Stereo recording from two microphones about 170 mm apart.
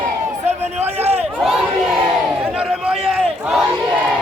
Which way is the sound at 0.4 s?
40° right (ahead or behind).